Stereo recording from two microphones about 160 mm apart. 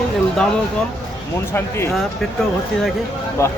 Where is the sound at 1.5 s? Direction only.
15° left (ahead or behind).